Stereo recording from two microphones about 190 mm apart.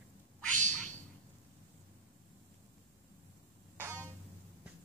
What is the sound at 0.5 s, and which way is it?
Cat, 40° right (ahead or behind).